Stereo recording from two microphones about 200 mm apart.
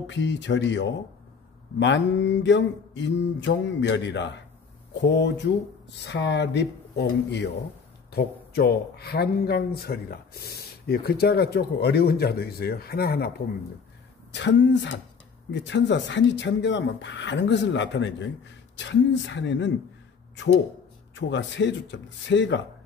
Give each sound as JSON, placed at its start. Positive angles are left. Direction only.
{"t": 0.0, "sound": "speech", "side_deg": 65}
{"t": 14.3, "sound": "speech", "side_deg": 60}
{"t": 21.1, "sound": "speech", "side_deg": 65}